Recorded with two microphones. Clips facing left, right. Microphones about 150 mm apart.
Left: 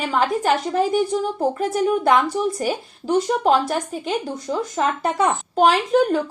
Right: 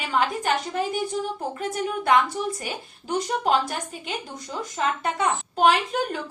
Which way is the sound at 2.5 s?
35° left (ahead or behind).